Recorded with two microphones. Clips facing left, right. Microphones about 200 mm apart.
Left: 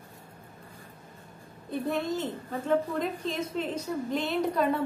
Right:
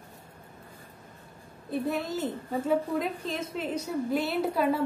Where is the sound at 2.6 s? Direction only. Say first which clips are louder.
Left 1 dB; 5° right (ahead or behind).